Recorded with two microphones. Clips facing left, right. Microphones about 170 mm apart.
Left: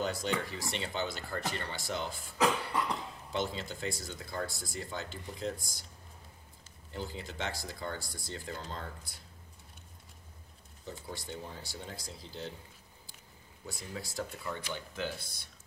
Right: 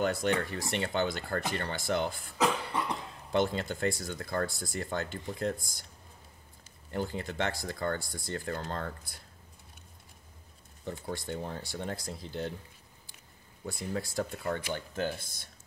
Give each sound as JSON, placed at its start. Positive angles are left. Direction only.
{"t": 0.0, "sound": "speech", "side_deg": -60}
{"t": 3.3, "sound": "speech", "side_deg": -55}
{"t": 6.9, "sound": "speech", "side_deg": -55}
{"t": 10.9, "sound": "speech", "side_deg": -55}
{"t": 13.7, "sound": "speech", "side_deg": -55}